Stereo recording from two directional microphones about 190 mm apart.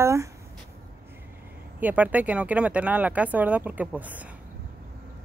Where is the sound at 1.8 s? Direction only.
10° right (ahead or behind).